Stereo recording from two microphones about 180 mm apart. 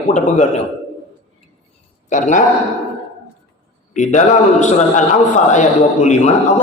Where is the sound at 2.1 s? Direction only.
45° left (ahead or behind).